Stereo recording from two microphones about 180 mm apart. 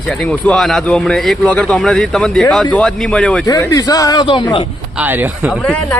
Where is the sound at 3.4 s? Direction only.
20° left (ahead or behind).